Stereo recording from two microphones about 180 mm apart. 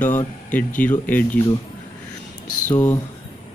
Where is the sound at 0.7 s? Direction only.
10° left (ahead or behind).